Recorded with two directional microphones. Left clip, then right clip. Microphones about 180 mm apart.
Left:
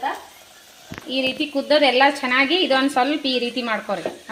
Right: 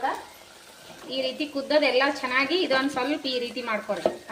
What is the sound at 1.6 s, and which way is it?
A woman's voice, 50° left (ahead or behind).